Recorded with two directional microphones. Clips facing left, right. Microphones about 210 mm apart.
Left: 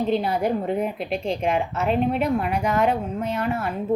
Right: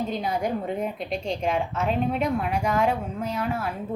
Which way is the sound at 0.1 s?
5° left (ahead or behind).